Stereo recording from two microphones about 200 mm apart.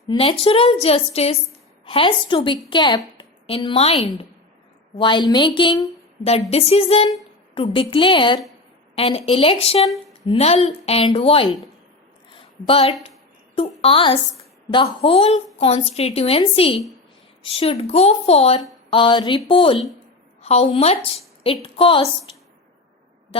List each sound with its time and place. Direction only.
0.1 s a woman's voice: 25° left (ahead or behind)
12.3 s a sound: 25° left (ahead or behind)
13.6 s a woman's voice: 30° left (ahead or behind)
23.3 s speech: 25° left (ahead or behind)